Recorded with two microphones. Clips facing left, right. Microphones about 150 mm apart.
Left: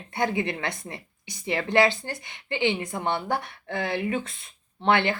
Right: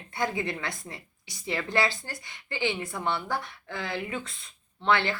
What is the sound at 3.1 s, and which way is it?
Speech, 55° left (ahead or behind).